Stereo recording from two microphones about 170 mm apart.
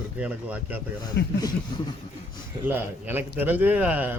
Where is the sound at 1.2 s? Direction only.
80° left.